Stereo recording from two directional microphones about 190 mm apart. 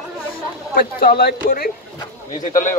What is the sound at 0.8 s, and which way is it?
Speech, 50° left (ahead or behind).